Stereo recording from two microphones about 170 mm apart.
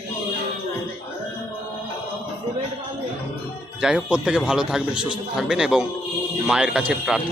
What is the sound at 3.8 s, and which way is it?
A man's voice, 5° right (ahead or behind).